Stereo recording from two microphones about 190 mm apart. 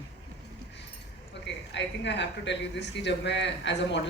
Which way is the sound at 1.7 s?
65° left (ahead or behind).